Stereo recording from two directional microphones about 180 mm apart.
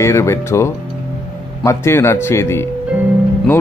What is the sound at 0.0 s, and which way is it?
Speech, 15° left (ahead or behind).